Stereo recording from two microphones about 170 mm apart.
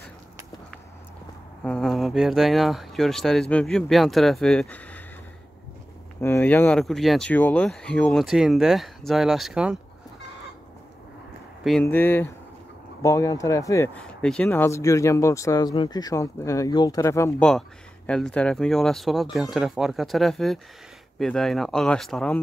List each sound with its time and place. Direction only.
1.6 s speech: 5° left (ahead or behind)
6.2 s speech: 10° left (ahead or behind); by 9.8 s 5° right (ahead or behind)
11.8 s speech: 10° left (ahead or behind)
13.9 s speech: 5° left (ahead or behind)
17.4 s speech: 5° left (ahead or behind)